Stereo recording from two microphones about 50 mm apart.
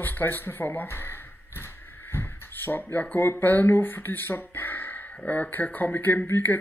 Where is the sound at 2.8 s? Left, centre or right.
Left.